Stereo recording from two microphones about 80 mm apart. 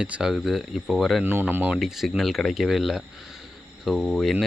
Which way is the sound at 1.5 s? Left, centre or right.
Right.